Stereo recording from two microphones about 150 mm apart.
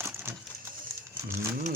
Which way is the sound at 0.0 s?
15° right (ahead or behind).